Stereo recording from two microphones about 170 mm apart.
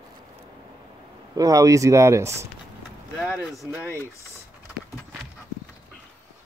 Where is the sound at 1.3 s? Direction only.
20° right (ahead or behind).